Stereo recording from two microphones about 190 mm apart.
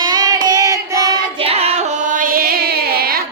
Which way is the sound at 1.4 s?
30° right (ahead or behind).